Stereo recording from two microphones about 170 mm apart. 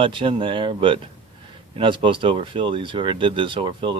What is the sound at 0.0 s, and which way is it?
Speech, 30° right (ahead or behind).